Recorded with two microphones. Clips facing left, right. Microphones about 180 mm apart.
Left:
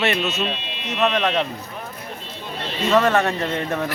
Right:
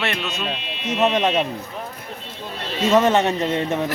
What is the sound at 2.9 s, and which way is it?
Speech, 20° right (ahead or behind).